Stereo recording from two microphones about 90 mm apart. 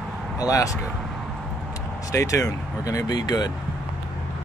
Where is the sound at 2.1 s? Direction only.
40° left (ahead or behind).